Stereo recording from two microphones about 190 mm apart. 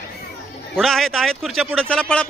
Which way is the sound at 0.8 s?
Centre (ahead or behind).